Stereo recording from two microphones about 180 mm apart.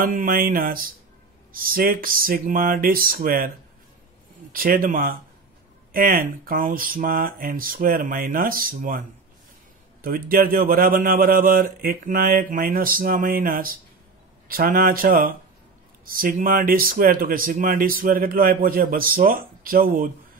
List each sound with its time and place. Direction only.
0.0 s speech: 50° right (ahead or behind)
10.0 s speech: 50° right (ahead or behind)